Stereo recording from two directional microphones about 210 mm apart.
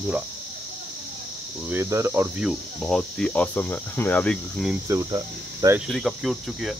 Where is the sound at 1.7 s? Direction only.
15° right (ahead or behind).